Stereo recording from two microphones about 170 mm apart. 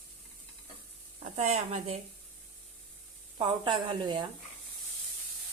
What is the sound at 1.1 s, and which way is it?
Speech, 40° right (ahead or behind).